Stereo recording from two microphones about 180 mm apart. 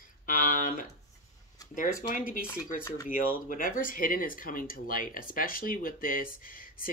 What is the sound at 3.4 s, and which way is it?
A man's voice, 50° left (ahead or behind).